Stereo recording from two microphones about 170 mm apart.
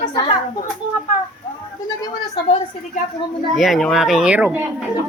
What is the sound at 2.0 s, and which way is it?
Speech, 25° left (ahead or behind).